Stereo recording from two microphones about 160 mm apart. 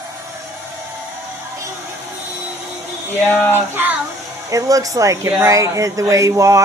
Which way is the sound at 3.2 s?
10° left (ahead or behind).